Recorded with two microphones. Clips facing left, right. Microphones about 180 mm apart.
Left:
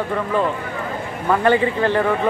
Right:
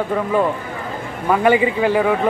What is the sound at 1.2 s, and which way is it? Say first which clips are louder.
Speech: right 2 dB; 10° right (ahead or behind).